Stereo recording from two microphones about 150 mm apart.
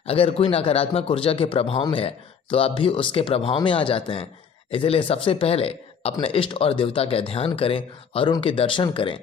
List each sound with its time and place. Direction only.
0.0 s speech: 40° left (ahead or behind)